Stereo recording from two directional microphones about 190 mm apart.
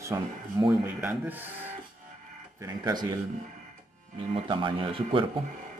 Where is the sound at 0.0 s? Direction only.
20° right (ahead or behind).